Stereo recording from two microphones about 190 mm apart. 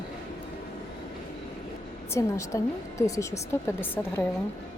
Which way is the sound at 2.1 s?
15° left (ahead or behind).